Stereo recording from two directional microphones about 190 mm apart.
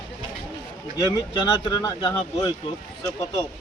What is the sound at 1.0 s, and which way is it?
Speech, 20° left (ahead or behind).